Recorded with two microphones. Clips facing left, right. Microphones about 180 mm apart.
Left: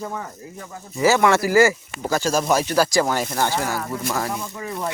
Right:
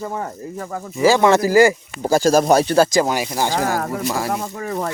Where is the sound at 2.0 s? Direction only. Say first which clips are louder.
Right 7 dB; 35° right (ahead or behind).